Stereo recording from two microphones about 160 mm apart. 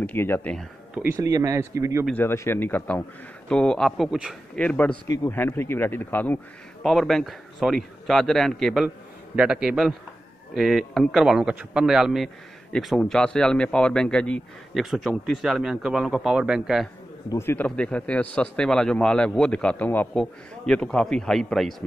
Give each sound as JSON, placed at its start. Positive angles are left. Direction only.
{"t": 0.0, "sound": "speech", "side_deg": 15}
{"t": 1.1, "sound": "speech", "side_deg": -20}
{"t": 2.1, "sound": "a man's voice", "side_deg": 15}
{"t": 4.6, "sound": "speech", "side_deg": 10}
{"t": 5.0, "sound": "a man's voice", "side_deg": 20}
{"t": 17.3, "sound": "a man's voice", "side_deg": 15}